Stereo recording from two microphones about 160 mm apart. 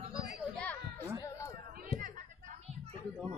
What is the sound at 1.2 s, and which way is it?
Chatter, 20° left (ahead or behind).